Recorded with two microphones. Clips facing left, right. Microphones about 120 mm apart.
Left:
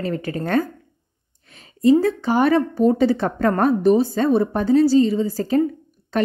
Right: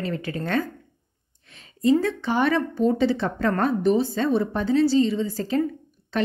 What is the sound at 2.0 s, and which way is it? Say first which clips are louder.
Speech: left 5 dB; 40° left (ahead or behind).